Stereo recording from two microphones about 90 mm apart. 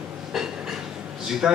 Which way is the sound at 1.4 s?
10° right (ahead or behind).